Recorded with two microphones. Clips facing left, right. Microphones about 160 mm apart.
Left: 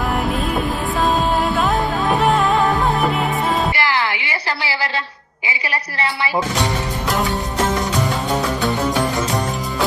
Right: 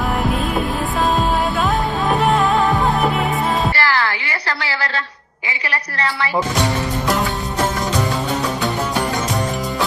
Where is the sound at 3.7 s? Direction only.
20° left (ahead or behind).